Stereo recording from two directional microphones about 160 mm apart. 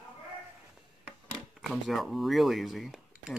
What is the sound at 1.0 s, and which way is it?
Speech, 5° right (ahead or behind).